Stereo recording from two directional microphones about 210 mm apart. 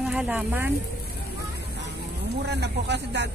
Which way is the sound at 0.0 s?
5° right (ahead or behind).